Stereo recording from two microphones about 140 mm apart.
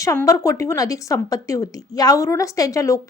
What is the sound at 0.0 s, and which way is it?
Speech, 20° left (ahead or behind).